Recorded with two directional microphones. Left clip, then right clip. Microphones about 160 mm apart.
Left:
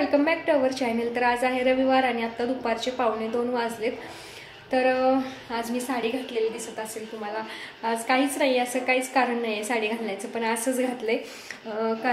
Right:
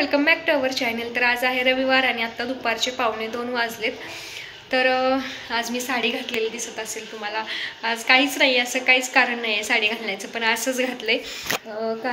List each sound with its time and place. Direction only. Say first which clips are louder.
0.0 s a woman's voice: right 3 dB; 15° left (ahead or behind)
7.3 s a woman's voice: right 6 dB; 15° left (ahead or behind)